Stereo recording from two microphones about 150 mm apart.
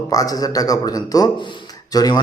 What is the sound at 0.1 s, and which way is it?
A man's voice, 25° left (ahead or behind).